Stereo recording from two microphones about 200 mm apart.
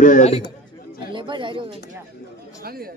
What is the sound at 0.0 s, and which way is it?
Speech, 35° left (ahead or behind).